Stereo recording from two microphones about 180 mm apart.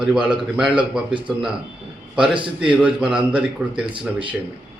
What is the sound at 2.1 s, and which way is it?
A man's voice, 5° right (ahead or behind).